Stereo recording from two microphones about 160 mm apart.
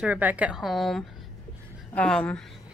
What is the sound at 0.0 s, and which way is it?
Speech, 10° right (ahead or behind).